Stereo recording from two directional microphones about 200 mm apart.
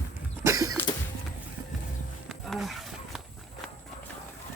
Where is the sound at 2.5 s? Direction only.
Centre (ahead or behind).